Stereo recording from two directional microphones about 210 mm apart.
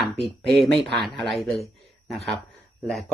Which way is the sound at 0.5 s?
Centre (ahead or behind).